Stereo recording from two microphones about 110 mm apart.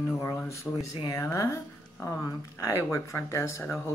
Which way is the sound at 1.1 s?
30° left (ahead or behind).